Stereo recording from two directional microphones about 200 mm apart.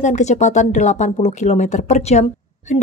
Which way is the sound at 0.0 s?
35° left (ahead or behind).